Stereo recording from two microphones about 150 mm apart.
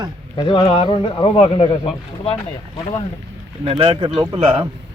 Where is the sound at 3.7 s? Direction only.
40° right (ahead or behind).